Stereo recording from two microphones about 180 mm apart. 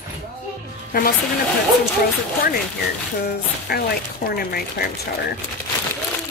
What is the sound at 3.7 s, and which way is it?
Speech, 60° left (ahead or behind).